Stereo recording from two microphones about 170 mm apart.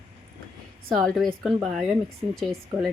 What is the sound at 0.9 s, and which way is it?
Speech, centre (ahead or behind).